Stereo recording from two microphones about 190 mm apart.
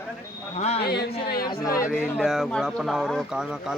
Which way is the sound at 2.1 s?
5° right (ahead or behind).